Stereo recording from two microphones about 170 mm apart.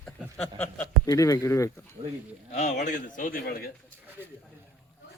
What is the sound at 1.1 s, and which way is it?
Speech, 20° left (ahead or behind).